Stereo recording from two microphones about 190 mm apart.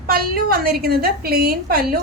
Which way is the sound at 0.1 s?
50° right (ahead or behind).